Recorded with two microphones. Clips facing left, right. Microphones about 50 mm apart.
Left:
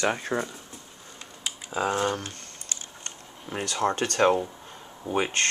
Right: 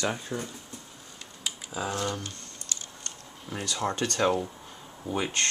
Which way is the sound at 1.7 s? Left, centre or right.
Left.